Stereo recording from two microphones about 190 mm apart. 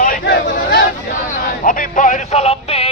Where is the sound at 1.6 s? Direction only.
45° left (ahead or behind).